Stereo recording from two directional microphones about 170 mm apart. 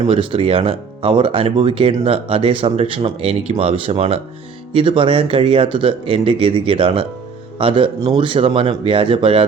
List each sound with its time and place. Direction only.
0.0 s speech: 30° right (ahead or behind)